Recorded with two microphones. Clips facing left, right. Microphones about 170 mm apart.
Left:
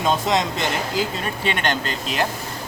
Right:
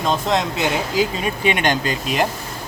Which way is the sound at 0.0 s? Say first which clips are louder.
Right 1 dB; centre (ahead or behind).